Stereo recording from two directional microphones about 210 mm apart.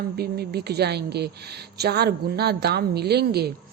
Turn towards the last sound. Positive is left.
turn(degrees=-50)  # may be behind; listen again after turning